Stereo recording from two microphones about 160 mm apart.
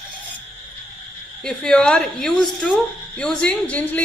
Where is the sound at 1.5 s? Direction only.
5° left (ahead or behind).